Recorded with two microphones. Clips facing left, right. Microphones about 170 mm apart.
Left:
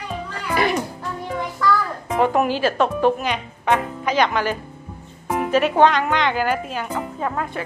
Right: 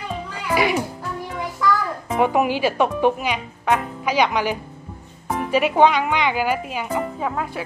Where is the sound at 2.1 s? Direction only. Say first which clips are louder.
Even; 10° right (ahead or behind).